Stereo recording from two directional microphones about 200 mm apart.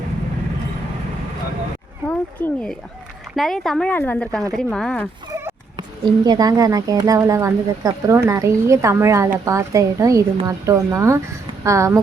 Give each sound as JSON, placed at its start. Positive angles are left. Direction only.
{"t": 2.0, "sound": "a woman's voice", "side_deg": 5}
{"t": 6.2, "sound": "speech", "side_deg": -20}